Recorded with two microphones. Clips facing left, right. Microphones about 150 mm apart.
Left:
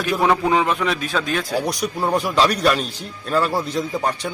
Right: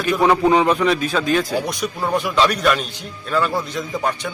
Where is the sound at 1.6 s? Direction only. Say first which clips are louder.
Left 1 dB; 35° left (ahead or behind).